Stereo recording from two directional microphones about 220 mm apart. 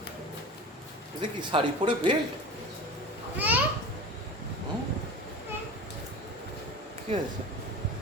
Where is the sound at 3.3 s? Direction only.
10° right (ahead or behind).